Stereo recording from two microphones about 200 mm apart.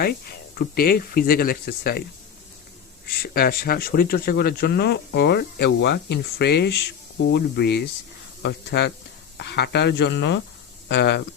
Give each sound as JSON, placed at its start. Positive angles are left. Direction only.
{"t": 0.0, "sound": "speech", "side_deg": 50}
{"t": 3.1, "sound": "speech", "side_deg": 50}